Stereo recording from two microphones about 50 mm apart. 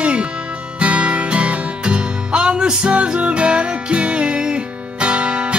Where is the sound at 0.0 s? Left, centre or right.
Right.